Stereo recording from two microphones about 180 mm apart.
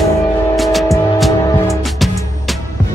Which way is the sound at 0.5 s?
Centre (ahead or behind).